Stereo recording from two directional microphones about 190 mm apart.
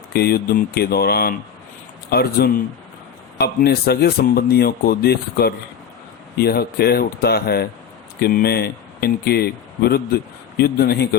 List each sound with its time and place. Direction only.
0.1 s speech: 55° left (ahead or behind)